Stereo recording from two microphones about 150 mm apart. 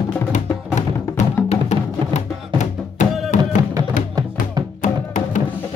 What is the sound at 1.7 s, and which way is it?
Music, 50° left (ahead or behind).